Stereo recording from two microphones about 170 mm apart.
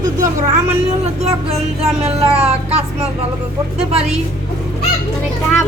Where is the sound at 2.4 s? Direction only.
35° right (ahead or behind).